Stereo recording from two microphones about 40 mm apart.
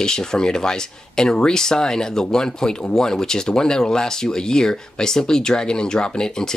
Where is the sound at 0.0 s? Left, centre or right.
Centre.